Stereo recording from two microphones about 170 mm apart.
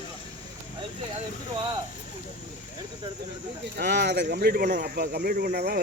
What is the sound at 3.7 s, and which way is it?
Speech, 80° right.